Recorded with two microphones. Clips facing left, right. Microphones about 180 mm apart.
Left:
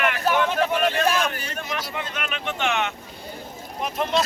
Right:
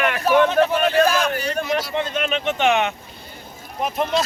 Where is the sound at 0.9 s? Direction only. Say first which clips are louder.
Right 5 dB; 40° right (ahead or behind); by 2.9 s 15° right (ahead or behind).